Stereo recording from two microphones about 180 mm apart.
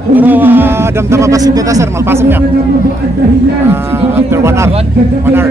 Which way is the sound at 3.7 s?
15° right (ahead or behind).